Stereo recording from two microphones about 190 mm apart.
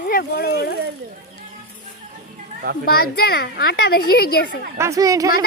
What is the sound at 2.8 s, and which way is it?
A child's voice, 55° left (ahead or behind).